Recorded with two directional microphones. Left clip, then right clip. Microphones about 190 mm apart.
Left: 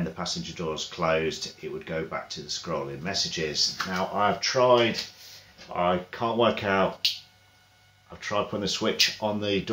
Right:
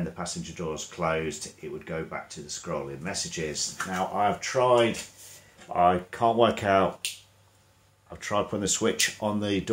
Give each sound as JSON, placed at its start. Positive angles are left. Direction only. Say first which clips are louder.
{"t": 0.1, "sound": "speech", "louder": "left 3 dB", "side_deg": -5}
{"t": 5.7, "sound": "speech", "louder": "right 3 dB", "side_deg": -25}
{"t": 8.2, "sound": "speech", "louder": "even", "side_deg": -25}